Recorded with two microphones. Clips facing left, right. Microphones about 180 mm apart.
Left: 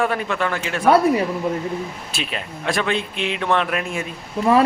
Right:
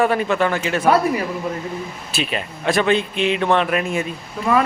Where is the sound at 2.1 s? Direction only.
Centre (ahead or behind).